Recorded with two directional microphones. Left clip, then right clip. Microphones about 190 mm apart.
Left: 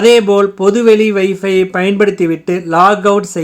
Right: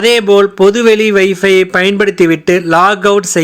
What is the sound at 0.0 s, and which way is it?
Speech, 15° right (ahead or behind).